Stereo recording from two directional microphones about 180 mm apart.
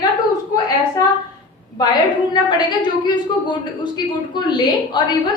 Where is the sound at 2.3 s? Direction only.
25° left (ahead or behind).